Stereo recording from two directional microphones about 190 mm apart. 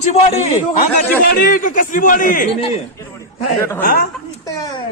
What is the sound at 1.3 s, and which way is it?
A man's voice, 45° left (ahead or behind).